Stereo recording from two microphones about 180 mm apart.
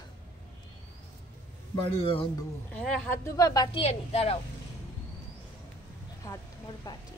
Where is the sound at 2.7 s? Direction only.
5° left (ahead or behind).